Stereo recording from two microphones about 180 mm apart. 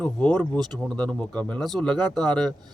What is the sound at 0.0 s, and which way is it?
A man's voice, 10° left (ahead or behind).